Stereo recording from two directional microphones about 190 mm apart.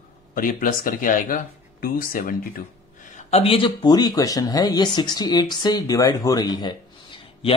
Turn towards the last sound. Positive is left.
turn(degrees=25)  # may be behind; listen again after turning